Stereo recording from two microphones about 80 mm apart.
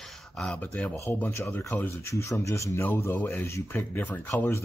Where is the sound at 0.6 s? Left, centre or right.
Left.